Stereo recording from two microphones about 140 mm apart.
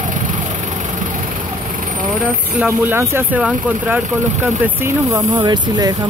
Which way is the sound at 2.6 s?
15° right (ahead or behind).